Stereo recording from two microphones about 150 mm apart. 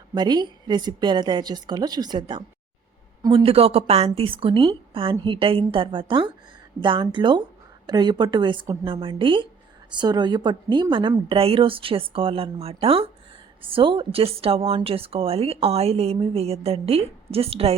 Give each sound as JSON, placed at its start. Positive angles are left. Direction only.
{"t": 0.1, "sound": "a woman's voice", "side_deg": -30}